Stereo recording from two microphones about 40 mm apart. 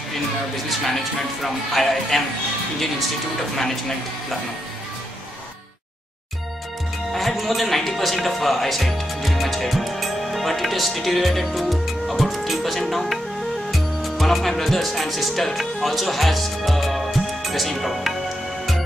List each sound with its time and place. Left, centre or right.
0.7 s speech: centre
7.1 s music: centre
7.3 s speech: centre